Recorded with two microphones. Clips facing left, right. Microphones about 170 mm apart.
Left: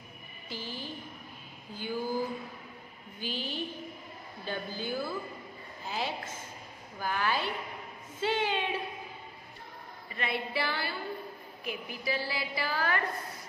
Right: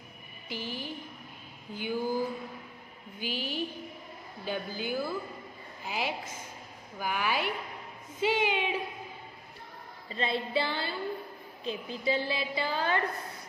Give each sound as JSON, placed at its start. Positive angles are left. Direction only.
{"t": 0.5, "sound": "a sound", "side_deg": -15}
{"t": 1.8, "sound": "a woman's voice", "side_deg": -15}
{"t": 3.2, "sound": "a woman's voice", "side_deg": -10}
{"t": 10.0, "sound": "a woman's voice", "side_deg": -25}